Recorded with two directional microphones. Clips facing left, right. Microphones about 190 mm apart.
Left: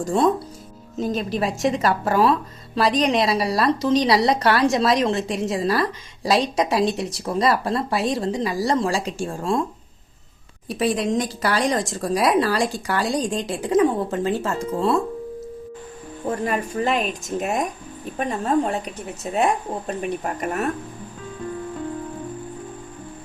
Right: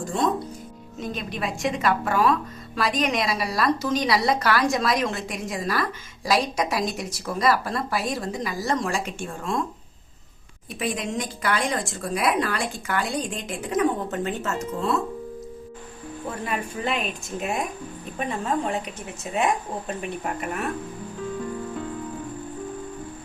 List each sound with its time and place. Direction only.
0.9 s a woman's voice: 35° left (ahead or behind)
10.7 s a woman's voice: 35° left (ahead or behind)
16.5 s a woman's voice: 45° left (ahead or behind)